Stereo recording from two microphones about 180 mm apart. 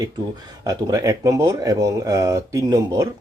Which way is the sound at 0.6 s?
20° right (ahead or behind).